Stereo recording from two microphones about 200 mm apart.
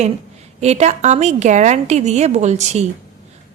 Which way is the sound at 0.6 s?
35° right (ahead or behind).